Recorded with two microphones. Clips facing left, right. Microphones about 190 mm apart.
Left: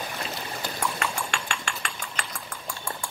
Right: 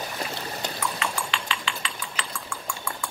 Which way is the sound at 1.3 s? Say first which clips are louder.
Right 1 dB; 50° left (ahead or behind).